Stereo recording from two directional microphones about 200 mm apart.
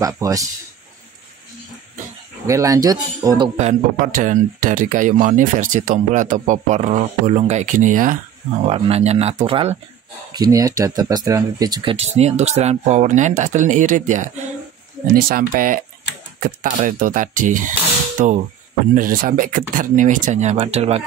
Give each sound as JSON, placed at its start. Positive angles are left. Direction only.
{"t": 0.0, "sound": "speech", "side_deg": -15}
{"t": 2.4, "sound": "speech", "side_deg": -15}
{"t": 3.5, "sound": "speech", "side_deg": -40}
{"t": 8.6, "sound": "speech", "side_deg": -30}